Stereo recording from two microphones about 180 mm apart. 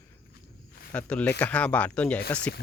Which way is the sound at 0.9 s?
5° left (ahead or behind).